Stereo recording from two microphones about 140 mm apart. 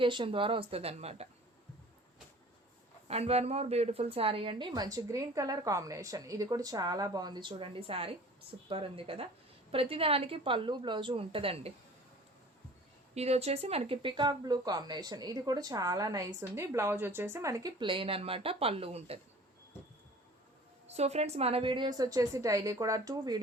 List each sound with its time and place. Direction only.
0.0 s a woman's voice: 35° right (ahead or behind)
3.1 s a woman's voice: 45° right (ahead or behind)
13.1 s speech: 50° right (ahead or behind)
20.8 s speech: 50° right (ahead or behind); by 23.4 s 25° right (ahead or behind)